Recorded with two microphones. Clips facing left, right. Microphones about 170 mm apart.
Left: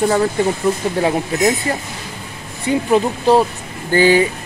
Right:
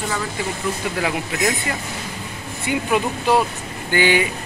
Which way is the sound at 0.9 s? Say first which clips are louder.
Left 6 dB; 35° left (ahead or behind).